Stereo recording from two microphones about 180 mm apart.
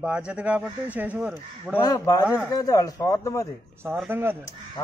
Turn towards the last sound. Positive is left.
turn(degrees=-10)  # may be behind; listen again after turning